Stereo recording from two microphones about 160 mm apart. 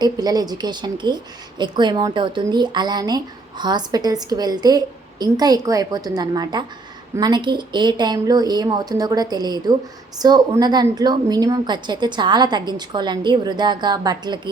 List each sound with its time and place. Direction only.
0.0 s a woman's voice: 25° right (ahead or behind)